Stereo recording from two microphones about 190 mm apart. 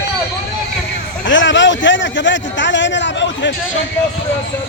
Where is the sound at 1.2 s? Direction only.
80° left.